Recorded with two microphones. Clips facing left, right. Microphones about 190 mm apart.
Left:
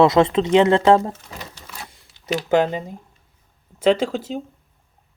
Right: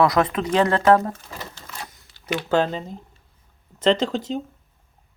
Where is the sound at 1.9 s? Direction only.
35° left (ahead or behind).